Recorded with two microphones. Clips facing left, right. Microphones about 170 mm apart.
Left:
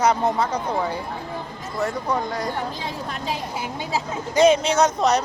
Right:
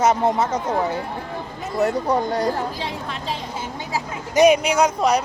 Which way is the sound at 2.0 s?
30° right (ahead or behind).